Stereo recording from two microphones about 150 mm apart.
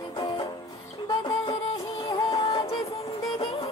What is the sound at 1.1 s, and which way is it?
Music, 30° left (ahead or behind).